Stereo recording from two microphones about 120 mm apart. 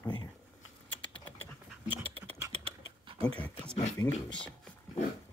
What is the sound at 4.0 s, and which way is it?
Speech, 25° left (ahead or behind).